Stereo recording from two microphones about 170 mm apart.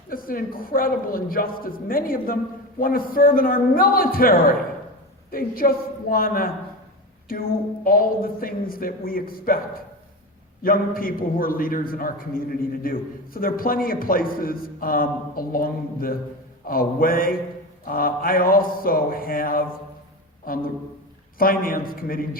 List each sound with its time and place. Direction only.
0.1 s a man's voice: 55° left (ahead or behind)
7.9 s a man's voice: 55° left (ahead or behind)
10.6 s a man's voice: 60° left (ahead or behind)
21.3 s a man's voice: 60° left (ahead or behind)